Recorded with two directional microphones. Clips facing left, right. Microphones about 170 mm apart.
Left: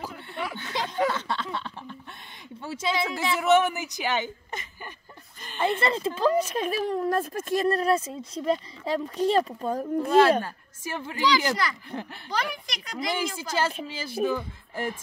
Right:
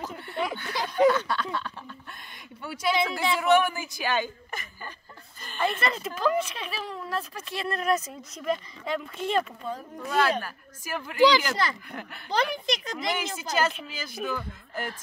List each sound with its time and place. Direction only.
0.6 s a woman's voice: 25° left (ahead or behind)
1.1 s a sound: 25° left (ahead or behind)
2.6 s a woman's voice: 25° left (ahead or behind); by 9.8 s 40° left (ahead or behind)
9.9 s a woman's voice: 25° left (ahead or behind)
12.3 s speech: 25° right (ahead or behind)
13.4 s a woman's voice: 30° left (ahead or behind)